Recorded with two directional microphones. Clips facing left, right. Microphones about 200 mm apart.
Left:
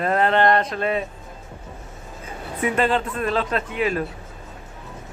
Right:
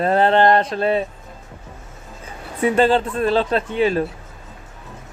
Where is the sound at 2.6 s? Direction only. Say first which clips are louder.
Right 5 dB; 30° right (ahead or behind).